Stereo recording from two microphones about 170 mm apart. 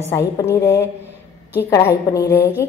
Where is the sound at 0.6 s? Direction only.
20° left (ahead or behind).